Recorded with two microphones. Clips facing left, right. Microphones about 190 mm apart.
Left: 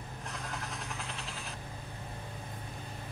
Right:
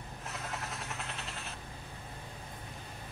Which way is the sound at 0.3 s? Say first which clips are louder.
Right 1 dB; centre (ahead or behind).